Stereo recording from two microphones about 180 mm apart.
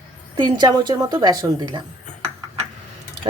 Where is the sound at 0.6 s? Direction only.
25° right (ahead or behind).